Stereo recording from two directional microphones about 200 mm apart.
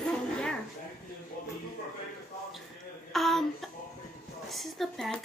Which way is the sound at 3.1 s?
Centre (ahead or behind).